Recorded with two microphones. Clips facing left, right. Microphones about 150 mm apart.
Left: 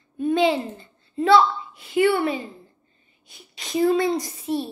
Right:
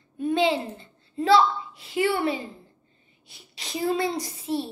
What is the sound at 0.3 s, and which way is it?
A child's voice, 25° right (ahead or behind).